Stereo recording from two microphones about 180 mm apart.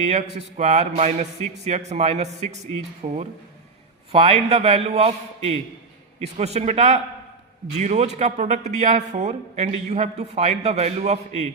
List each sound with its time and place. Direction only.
0.1 s a man's voice: 40° right (ahead or behind)